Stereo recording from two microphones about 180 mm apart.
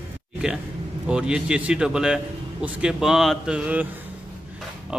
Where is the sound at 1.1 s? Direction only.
5° right (ahead or behind).